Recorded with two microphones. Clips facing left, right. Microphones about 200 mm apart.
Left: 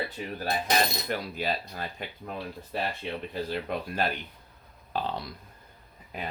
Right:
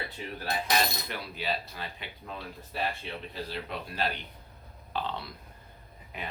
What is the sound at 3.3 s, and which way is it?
Speech, 50° left (ahead or behind).